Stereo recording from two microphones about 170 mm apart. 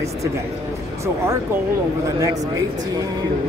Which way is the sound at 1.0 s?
15° right (ahead or behind).